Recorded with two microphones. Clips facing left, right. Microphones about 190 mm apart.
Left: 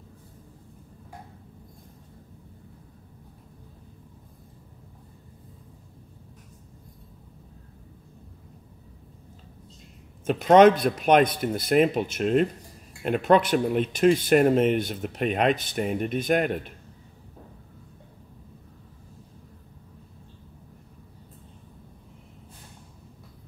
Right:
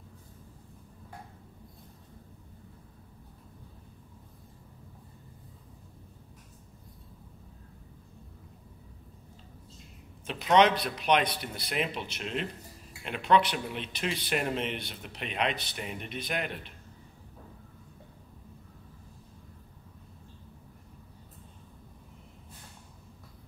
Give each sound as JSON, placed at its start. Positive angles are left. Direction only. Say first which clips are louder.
{"t": 10.2, "sound": "speech", "louder": "left 8 dB", "side_deg": 45}